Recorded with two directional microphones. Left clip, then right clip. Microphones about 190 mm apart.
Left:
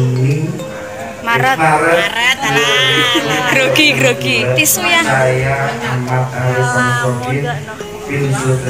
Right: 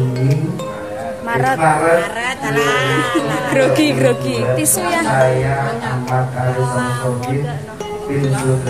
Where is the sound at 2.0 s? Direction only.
40° right (ahead or behind).